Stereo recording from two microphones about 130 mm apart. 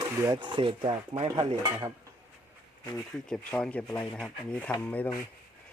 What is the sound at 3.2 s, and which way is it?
Speech, 5° left (ahead or behind).